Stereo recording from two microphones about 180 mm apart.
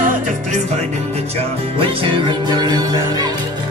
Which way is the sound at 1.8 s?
25° right (ahead or behind).